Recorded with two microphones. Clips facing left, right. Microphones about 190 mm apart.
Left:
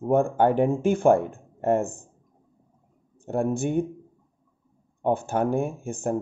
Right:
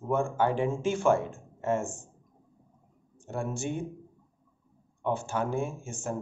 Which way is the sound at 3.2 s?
60° left (ahead or behind).